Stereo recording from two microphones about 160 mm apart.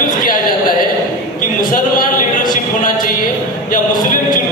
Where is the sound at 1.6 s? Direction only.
60° left (ahead or behind).